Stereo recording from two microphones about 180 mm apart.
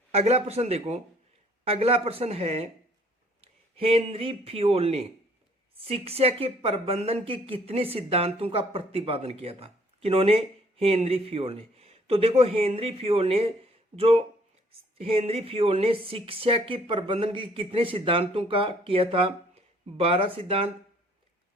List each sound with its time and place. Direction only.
0.1 s speech: 35° right (ahead or behind)